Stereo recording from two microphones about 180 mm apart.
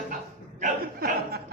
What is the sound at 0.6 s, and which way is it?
Chuckle, 55° right (ahead or behind).